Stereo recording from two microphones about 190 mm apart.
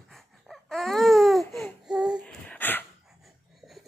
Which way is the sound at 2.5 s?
10° left (ahead or behind).